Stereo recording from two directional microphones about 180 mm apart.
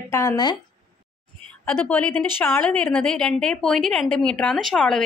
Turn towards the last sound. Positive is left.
turn(degrees=0)  # may be behind; listen again after turning